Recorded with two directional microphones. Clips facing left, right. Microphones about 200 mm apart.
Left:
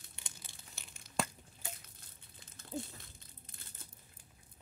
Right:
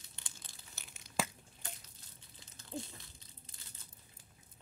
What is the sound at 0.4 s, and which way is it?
Tearing, centre (ahead or behind).